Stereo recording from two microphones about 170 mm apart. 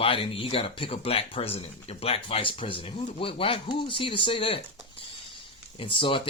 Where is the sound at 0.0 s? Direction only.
30° left (ahead or behind).